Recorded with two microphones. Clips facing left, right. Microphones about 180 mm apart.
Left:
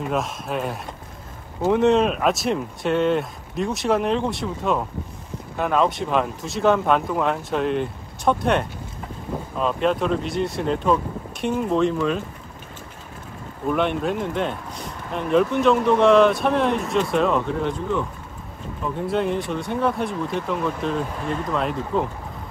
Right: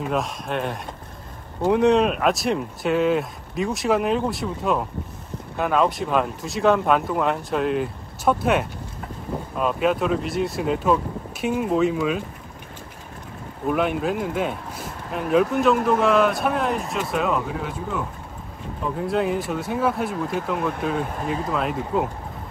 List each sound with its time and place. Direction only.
0.0 s speech: centre (ahead or behind)
13.7 s speech: 5° right (ahead or behind)
21.0 s speech: 50° right (ahead or behind)
21.5 s speech: 5° right (ahead or behind)